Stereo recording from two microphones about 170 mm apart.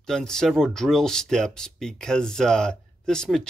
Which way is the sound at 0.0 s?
5° left (ahead or behind).